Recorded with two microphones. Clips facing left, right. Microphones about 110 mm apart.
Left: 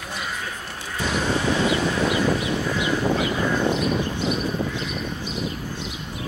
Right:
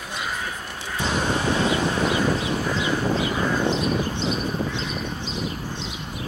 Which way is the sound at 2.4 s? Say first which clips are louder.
Even; 35° right (ahead or behind).